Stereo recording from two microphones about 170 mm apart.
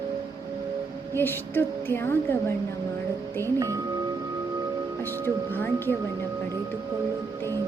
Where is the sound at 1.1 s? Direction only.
10° left (ahead or behind).